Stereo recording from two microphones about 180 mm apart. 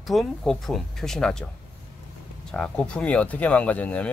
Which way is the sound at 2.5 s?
5° left (ahead or behind).